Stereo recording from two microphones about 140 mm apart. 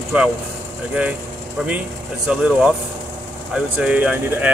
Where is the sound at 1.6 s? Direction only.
10° right (ahead or behind).